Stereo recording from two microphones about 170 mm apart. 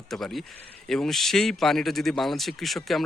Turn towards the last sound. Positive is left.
turn(degrees=0)  # may be behind; listen again after turning